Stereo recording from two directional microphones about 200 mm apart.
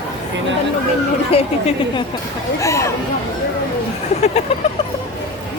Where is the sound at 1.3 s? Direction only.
30° left (ahead or behind).